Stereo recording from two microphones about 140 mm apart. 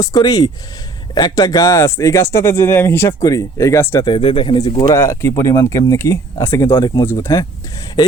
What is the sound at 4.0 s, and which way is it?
A man's voice, 35° left (ahead or behind).